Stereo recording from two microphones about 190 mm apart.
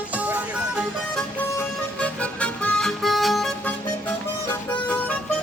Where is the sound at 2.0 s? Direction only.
5° left (ahead or behind).